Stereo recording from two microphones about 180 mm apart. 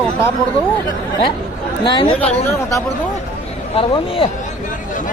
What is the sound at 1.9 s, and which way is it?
Speech, 30° left (ahead or behind).